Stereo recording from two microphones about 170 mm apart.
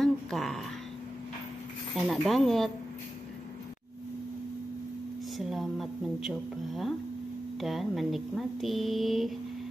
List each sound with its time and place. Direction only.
0.0 s a sound: centre (ahead or behind)
2.0 s speech: centre (ahead or behind)
5.4 s speech: centre (ahead or behind)